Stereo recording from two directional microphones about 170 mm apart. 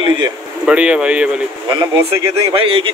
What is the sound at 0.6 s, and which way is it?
Speech, 5° right (ahead or behind).